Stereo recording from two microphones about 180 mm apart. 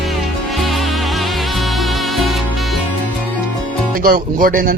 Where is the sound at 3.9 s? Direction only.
50° right (ahead or behind).